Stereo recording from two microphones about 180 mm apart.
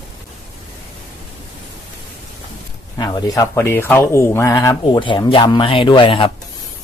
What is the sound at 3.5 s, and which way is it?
Speech, 15° left (ahead or behind).